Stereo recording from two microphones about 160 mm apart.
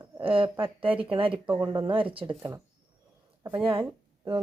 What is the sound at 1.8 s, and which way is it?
Speech, 30° right (ahead or behind).